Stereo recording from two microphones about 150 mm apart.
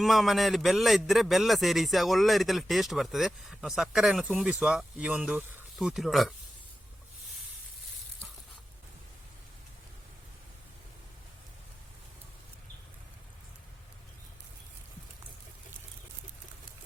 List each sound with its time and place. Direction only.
0.0 s a man's voice: centre (ahead or behind)